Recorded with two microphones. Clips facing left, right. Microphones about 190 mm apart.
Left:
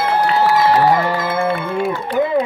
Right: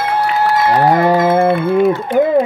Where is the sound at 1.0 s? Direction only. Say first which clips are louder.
Right 8 dB; 45° right (ahead or behind).